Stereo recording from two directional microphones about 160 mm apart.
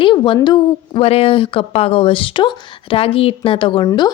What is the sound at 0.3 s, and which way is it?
Speech, 25° left (ahead or behind).